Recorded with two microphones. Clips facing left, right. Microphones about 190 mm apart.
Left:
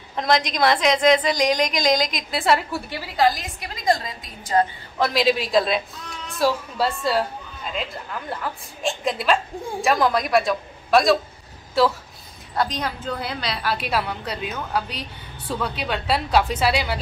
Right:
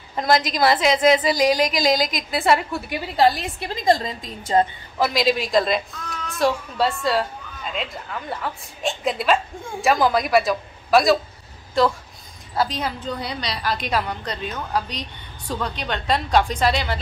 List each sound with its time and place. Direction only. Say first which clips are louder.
0.1 s a woman's voice: right 1 dB; 5° right (ahead or behind)
2.9 s a woman's voice: right 2 dB; 25° right (ahead or behind)
4.9 s a woman's voice: even; 5° right (ahead or behind)